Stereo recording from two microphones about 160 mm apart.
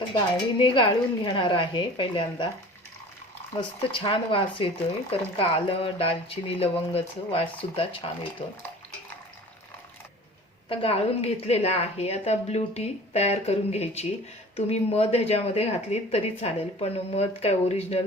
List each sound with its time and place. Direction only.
0.6 s a woman's voice: 30° left (ahead or behind)
3.6 s a woman's voice: 30° left (ahead or behind)
10.7 s a woman's voice: 35° left (ahead or behind)